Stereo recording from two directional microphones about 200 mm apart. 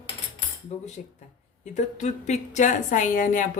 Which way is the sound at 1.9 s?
35° left (ahead or behind).